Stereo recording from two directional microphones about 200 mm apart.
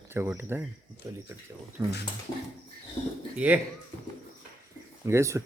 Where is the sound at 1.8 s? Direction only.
10° right (ahead or behind).